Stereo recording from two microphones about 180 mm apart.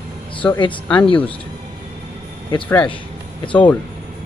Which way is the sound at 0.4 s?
20° left (ahead or behind).